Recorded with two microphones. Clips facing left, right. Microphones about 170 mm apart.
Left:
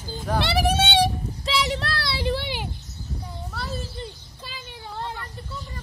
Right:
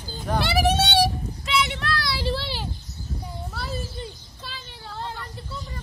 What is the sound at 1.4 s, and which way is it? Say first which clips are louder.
Child singing: even; 35° left (ahead or behind).